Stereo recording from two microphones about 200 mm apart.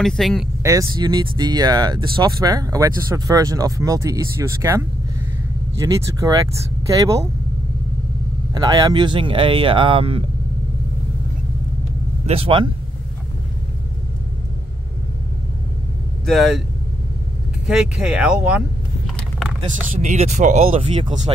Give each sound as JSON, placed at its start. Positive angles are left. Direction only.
{"t": 0.0, "sound": "speech", "side_deg": 0}
{"t": 0.6, "sound": "speech", "side_deg": -15}
{"t": 8.5, "sound": "speech", "side_deg": -20}
{"t": 12.3, "sound": "speech", "side_deg": -30}
{"t": 16.3, "sound": "speech", "side_deg": 0}
{"t": 17.6, "sound": "speech", "side_deg": -5}
{"t": 20.0, "sound": "speech", "side_deg": -35}